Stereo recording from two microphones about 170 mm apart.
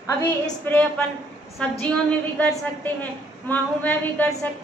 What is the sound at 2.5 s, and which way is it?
A woman's voice, 10° left (ahead or behind).